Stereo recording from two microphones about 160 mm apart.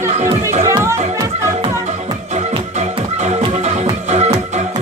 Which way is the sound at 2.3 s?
40° right (ahead or behind).